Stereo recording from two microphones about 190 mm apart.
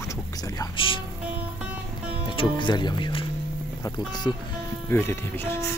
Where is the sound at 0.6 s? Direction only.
25° left (ahead or behind).